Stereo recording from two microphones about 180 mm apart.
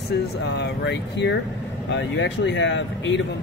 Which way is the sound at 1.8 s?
85° left.